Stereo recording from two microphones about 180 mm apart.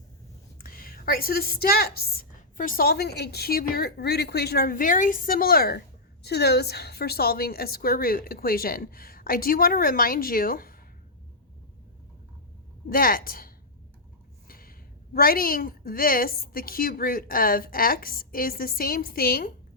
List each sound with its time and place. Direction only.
0.6 s a woman's voice: 55° left (ahead or behind)
12.9 s a woman's voice: 55° left (ahead or behind)